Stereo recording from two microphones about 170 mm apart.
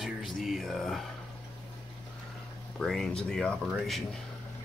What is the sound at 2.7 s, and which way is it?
Speech, 5° left (ahead or behind).